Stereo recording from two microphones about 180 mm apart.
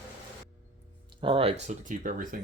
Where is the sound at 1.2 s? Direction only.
30° right (ahead or behind).